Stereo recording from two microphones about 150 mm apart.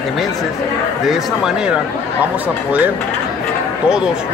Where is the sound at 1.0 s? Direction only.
5° right (ahead or behind).